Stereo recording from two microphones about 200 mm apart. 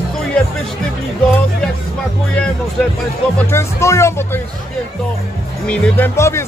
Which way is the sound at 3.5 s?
15° left (ahead or behind).